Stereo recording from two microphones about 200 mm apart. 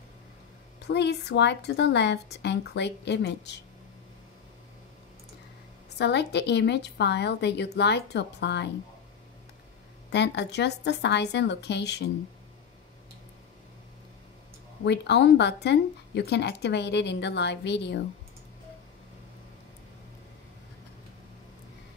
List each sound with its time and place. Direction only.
0.8 s speech: 60° left (ahead or behind)
5.9 s speech: 60° left (ahead or behind)
10.0 s speech: 60° left (ahead or behind)
14.9 s speech: 60° left (ahead or behind)